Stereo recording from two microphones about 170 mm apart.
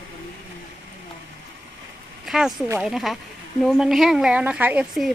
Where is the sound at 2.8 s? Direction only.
Centre (ahead or behind).